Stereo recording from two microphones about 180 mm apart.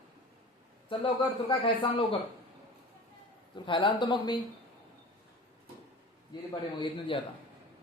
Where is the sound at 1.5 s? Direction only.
30° left (ahead or behind).